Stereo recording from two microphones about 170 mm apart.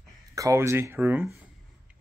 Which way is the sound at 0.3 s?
20° right (ahead or behind).